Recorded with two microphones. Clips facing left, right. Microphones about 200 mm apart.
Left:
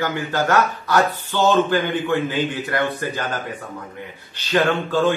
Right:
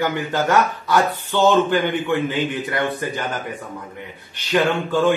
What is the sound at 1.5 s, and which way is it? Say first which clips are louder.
A man's voice: right 1 dB; 20° right (ahead or behind).